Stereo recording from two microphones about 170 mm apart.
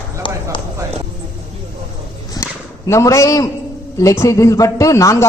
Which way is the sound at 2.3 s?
15° left (ahead or behind).